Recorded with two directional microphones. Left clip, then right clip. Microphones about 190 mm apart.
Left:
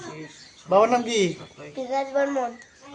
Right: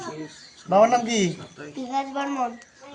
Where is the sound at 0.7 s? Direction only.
25° left (ahead or behind).